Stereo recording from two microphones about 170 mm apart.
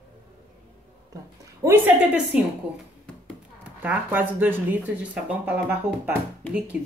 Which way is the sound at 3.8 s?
10° right (ahead or behind).